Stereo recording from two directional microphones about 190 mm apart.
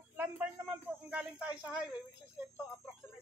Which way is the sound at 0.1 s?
10° right (ahead or behind).